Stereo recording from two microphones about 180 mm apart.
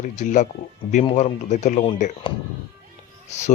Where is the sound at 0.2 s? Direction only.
45° left (ahead or behind).